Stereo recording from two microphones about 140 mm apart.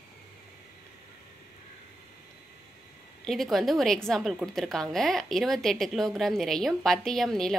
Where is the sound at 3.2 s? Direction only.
Centre (ahead or behind).